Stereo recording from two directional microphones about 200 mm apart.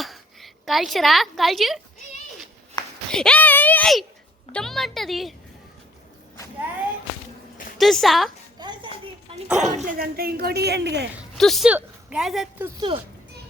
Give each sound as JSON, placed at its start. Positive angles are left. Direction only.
{"t": 0.0, "sound": "a woman's voice", "side_deg": 0}
{"t": 3.1, "sound": "speech", "side_deg": 5}
{"t": 7.8, "sound": "speech", "side_deg": 0}
{"t": 8.5, "sound": "a sound", "side_deg": -20}
{"t": 9.5, "sound": "speech", "side_deg": 0}
{"t": 9.8, "sound": "a woman's voice", "side_deg": -45}
{"t": 11.3, "sound": "speech", "side_deg": 0}